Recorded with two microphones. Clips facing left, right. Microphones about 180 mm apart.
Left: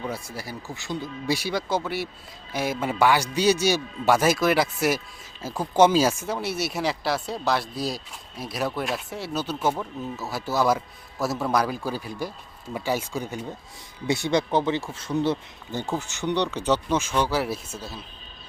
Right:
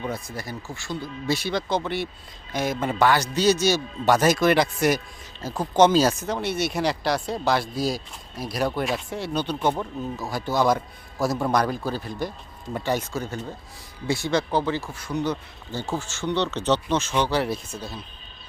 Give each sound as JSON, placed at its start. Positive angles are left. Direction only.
{"t": 0.1, "sound": "a man's voice", "side_deg": 10}